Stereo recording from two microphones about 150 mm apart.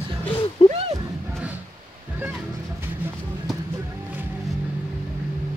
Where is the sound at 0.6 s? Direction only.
40° left (ahead or behind).